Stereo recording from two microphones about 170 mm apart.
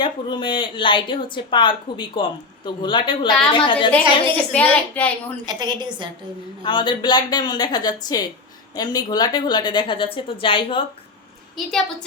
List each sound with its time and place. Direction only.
0.0 s speech: 25° left (ahead or behind)
4.5 s a woman's voice: 10° left (ahead or behind)
5.5 s a woman's voice: 25° right (ahead or behind)
6.6 s speech: 30° left (ahead or behind)
11.5 s a woman's voice: 5° left (ahead or behind)